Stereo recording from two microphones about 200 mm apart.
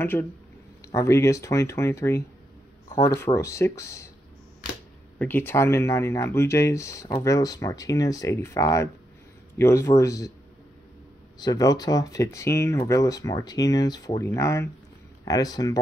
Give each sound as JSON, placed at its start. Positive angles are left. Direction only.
{"t": 0.0, "sound": "speech", "side_deg": 10}
{"t": 5.2, "sound": "speech", "side_deg": 10}
{"t": 11.3, "sound": "speech", "side_deg": 20}